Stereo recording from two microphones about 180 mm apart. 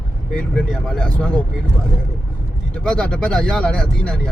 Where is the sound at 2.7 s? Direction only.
5° left (ahead or behind).